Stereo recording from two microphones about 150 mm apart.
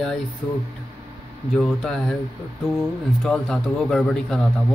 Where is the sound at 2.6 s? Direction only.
15° left (ahead or behind).